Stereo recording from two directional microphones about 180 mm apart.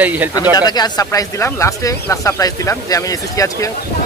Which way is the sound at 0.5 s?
20° left (ahead or behind).